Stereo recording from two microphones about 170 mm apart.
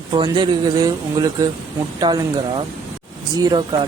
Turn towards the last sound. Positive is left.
turn(degrees=-25)  # may be behind; listen again after turning